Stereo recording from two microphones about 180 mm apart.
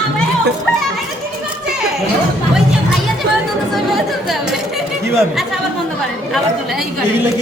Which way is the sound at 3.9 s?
Centre (ahead or behind).